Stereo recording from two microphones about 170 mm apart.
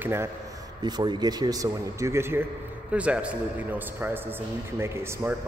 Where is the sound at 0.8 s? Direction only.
25° right (ahead or behind); by 3.3 s 5° right (ahead or behind).